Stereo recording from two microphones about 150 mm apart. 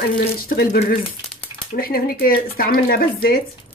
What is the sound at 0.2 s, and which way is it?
Speech, 90° left.